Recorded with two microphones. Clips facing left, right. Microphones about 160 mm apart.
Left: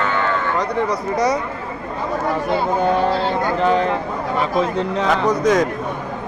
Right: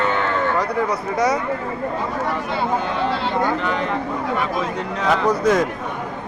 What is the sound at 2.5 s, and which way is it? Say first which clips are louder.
Speech: left 5 dB; 45° left (ahead or behind).